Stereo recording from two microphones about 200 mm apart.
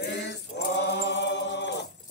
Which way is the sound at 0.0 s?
60° left (ahead or behind).